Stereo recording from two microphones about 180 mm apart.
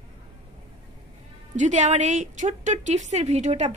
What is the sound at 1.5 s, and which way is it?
A woman's voice, 40° right (ahead or behind).